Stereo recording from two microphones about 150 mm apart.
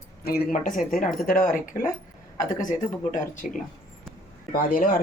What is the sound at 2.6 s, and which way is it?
Speech, 60° left (ahead or behind).